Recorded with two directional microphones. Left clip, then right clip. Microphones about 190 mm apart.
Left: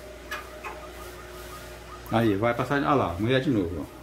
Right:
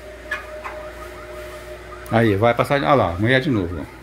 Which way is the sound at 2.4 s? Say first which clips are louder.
Right 8 dB; 35° right (ahead or behind).